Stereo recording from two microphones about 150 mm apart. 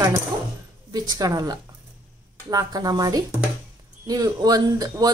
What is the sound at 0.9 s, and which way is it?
Speech, 25° right (ahead or behind).